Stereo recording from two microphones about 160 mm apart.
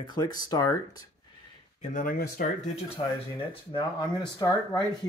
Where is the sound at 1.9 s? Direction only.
60° left (ahead or behind).